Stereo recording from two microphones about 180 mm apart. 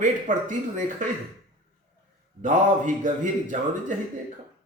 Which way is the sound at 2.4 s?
45° right (ahead or behind).